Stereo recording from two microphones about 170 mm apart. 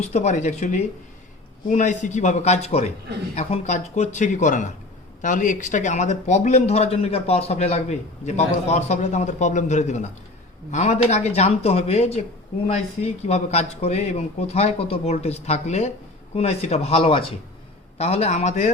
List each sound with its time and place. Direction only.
0.0 s speech: 40° left (ahead or behind)